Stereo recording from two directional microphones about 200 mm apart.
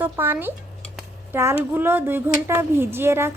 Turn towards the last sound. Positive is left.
turn(degrees=-10)  # may be behind; listen again after turning